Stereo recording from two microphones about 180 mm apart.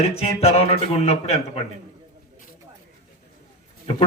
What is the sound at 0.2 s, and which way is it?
A man's voice, 35° left (ahead or behind).